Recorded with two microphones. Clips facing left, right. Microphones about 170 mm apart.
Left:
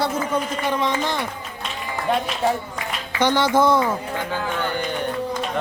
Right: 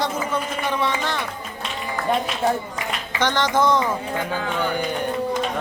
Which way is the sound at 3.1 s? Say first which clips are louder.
Left 3 dB; 10° left (ahead or behind).